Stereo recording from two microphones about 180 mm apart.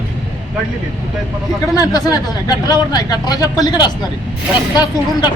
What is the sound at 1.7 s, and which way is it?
Speech, 20° left (ahead or behind).